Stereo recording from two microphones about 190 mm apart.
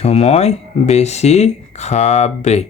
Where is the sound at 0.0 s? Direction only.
35° left (ahead or behind).